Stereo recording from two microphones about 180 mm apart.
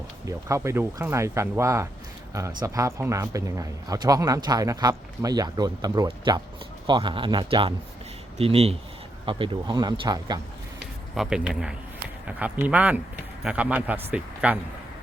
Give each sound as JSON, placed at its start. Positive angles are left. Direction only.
{"t": 0.3, "sound": "a man's voice", "side_deg": -15}
{"t": 11.1, "sound": "speech", "side_deg": 0}